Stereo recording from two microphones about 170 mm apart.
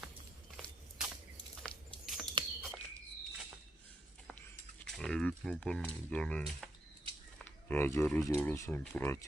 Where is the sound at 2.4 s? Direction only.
25° right (ahead or behind).